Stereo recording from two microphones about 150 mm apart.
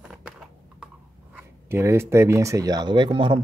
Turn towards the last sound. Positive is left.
turn(degrees=-35)  # may be behind; listen again after turning